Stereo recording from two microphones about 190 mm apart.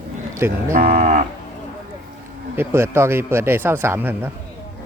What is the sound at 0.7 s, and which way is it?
Speech, 45° right (ahead or behind).